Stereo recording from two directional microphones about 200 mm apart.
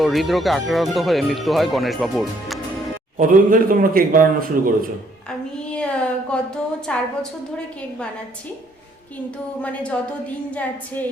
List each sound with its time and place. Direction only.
0.0 s speech: centre (ahead or behind)
3.2 s a man's voice: 45° right (ahead or behind)
5.7 s a sound: 5° left (ahead or behind)
9.6 s a woman's voice: 5° left (ahead or behind)